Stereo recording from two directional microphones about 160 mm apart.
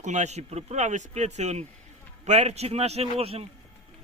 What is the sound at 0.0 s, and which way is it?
Speech, 50° right (ahead or behind).